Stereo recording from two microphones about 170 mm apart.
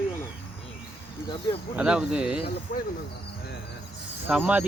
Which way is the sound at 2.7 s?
55° left (ahead or behind).